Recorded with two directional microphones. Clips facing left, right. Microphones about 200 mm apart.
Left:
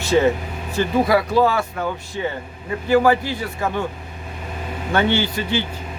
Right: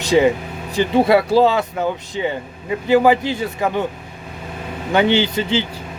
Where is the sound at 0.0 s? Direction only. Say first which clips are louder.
Right 2 dB; 15° right (ahead or behind).